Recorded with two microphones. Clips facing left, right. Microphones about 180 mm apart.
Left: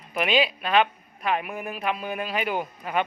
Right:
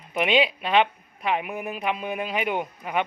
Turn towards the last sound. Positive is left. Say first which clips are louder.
# even
turn(degrees=-15)  # may be behind; listen again after turning